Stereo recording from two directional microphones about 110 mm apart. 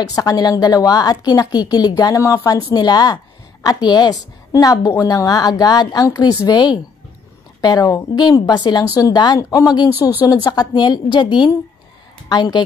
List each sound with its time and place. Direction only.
0.1 s a woman's voice: 35° left (ahead or behind)